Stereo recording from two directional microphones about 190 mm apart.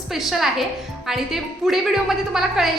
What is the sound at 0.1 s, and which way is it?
A woman's voice, centre (ahead or behind).